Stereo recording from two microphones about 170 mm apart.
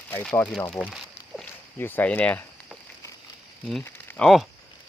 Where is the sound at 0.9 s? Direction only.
Centre (ahead or behind).